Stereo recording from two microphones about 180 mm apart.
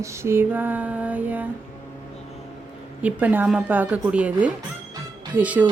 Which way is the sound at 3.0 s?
10° right (ahead or behind).